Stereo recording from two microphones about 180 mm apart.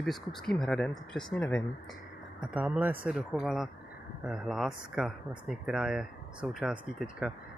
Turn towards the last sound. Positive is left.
turn(degrees=0)  # may be behind; listen again after turning